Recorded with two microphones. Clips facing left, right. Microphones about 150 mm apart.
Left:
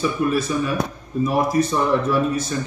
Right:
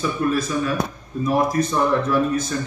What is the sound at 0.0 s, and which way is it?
Speech, 5° left (ahead or behind).